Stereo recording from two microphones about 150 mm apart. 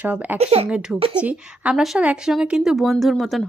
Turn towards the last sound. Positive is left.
turn(degrees=0)  # may be behind; listen again after turning